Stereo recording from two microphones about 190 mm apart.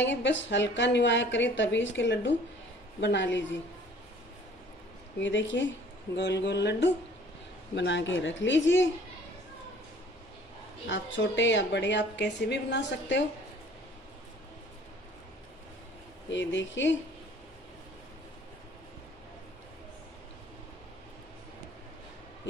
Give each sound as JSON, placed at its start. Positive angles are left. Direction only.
{"t": 0.2, "sound": "a woman's voice", "side_deg": 70}
{"t": 5.2, "sound": "a woman's voice", "side_deg": 75}
{"t": 10.9, "sound": "a woman's voice", "side_deg": 75}
{"t": 16.3, "sound": "a woman's voice", "side_deg": 70}